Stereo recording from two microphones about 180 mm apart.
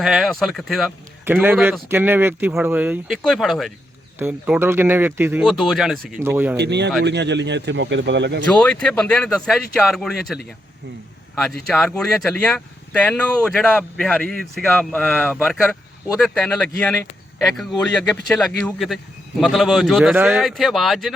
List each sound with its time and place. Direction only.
0.0 s speech: 5° right (ahead or behind)
5.5 s speech: centre (ahead or behind)
6.6 s speech: 70° right (ahead or behind)
8.4 s speech: 5° left (ahead or behind)